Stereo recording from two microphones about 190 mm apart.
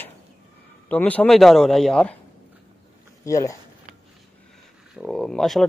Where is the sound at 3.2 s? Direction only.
15° left (ahead or behind).